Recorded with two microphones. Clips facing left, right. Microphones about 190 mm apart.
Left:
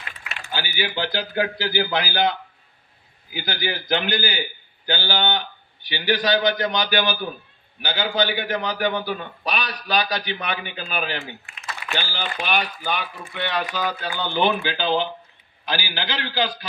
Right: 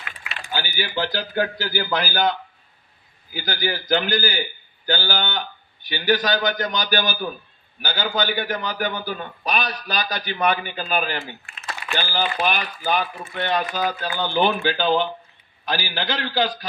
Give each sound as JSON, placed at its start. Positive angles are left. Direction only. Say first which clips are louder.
{"t": 0.5, "sound": "speech", "louder": "even", "side_deg": -45}